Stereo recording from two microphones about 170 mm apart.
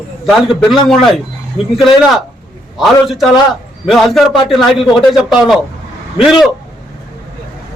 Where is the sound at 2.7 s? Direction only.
Centre (ahead or behind).